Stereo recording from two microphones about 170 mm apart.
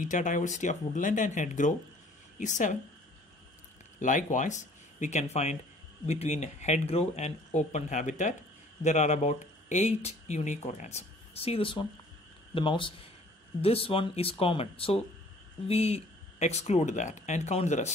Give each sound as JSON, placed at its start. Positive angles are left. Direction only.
{"t": 0.0, "sound": "speech", "side_deg": 50}
{"t": 4.0, "sound": "speech", "side_deg": 50}